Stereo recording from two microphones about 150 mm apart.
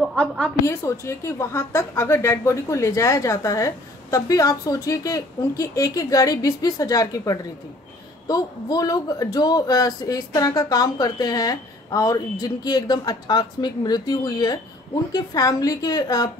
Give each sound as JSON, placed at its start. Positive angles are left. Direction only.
{"t": 0.1, "sound": "a woman's voice", "side_deg": 5}
{"t": 0.7, "sound": "a woman's voice", "side_deg": 20}